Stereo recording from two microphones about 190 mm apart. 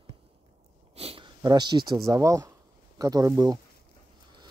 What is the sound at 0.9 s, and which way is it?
Speech, 30° right (ahead or behind).